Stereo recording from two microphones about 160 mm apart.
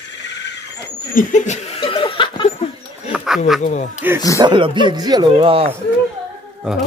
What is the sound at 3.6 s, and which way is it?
Speech, 50° left (ahead or behind).